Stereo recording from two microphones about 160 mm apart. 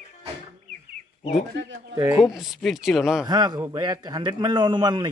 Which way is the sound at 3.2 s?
25° right (ahead or behind).